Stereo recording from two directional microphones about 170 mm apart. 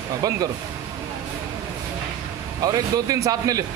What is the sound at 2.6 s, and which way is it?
Speech, 20° right (ahead or behind).